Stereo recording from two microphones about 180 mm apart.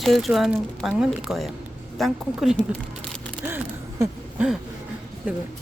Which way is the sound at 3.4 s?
10° right (ahead or behind).